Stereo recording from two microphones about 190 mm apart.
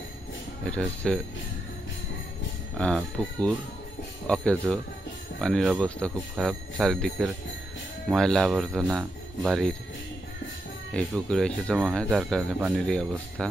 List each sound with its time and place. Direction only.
0.7 s speech: 5° left (ahead or behind)
2.8 s speech: 5° left (ahead or behind)
10.9 s speech: 5° left (ahead or behind)